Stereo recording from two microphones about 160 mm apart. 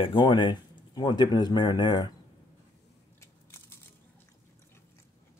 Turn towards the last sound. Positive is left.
turn(degrees=15)  # may be behind; listen again after turning